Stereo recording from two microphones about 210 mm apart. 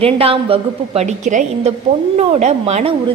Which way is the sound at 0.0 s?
25° right (ahead or behind).